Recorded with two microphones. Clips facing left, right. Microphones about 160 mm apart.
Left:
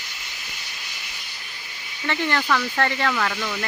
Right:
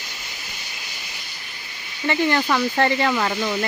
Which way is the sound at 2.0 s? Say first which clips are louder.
Right 4 dB; 15° right (ahead or behind).